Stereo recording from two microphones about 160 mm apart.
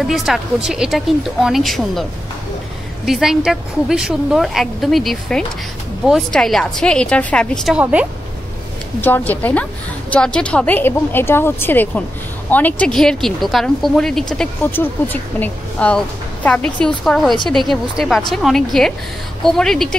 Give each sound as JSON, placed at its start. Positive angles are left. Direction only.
{"t": 0.0, "sound": "speech", "side_deg": 0}
{"t": 3.1, "sound": "speech", "side_deg": -5}
{"t": 7.7, "sound": "speech", "side_deg": -10}
{"t": 9.0, "sound": "a woman's voice", "side_deg": 10}